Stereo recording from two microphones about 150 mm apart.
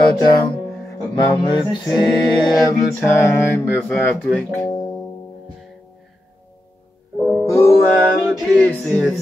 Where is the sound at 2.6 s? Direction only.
20° left (ahead or behind).